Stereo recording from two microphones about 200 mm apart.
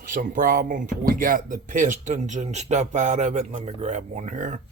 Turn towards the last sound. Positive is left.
turn(degrees=-40)  # may be behind; listen again after turning